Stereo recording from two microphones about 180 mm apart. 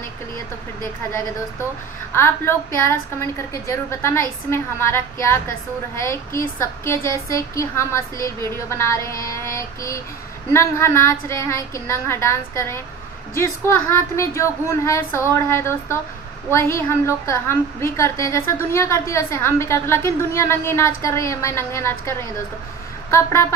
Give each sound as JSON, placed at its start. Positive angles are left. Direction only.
{"t": 2.1, "sound": "a woman's voice", "side_deg": 15}